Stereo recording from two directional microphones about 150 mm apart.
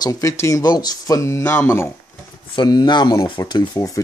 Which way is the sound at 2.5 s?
30° left (ahead or behind).